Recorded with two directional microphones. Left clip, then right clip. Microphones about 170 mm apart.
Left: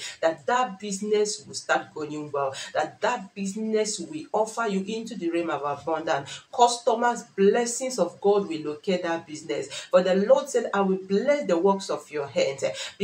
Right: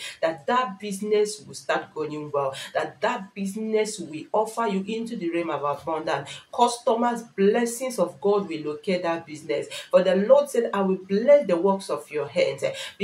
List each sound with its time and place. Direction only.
0.2 s speech: 10° left (ahead or behind)